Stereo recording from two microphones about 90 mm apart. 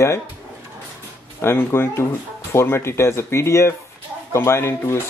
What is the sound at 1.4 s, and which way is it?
Speech, 25° left (ahead or behind).